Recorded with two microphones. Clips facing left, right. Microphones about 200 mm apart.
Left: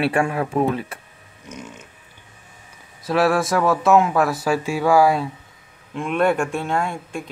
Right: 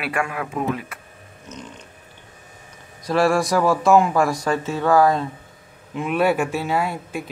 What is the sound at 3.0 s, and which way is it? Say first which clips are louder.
Speech: even; 5° left (ahead or behind).